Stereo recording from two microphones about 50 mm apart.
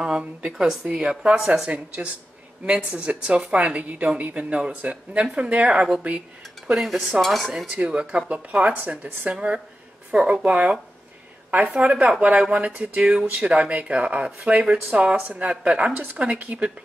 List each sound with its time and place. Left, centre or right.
0.2 s a woman's voice: right
6.7 s speech: centre
7.7 s speech: right
11.8 s speech: centre